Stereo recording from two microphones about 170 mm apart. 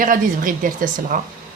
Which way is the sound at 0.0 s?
55° right (ahead or behind).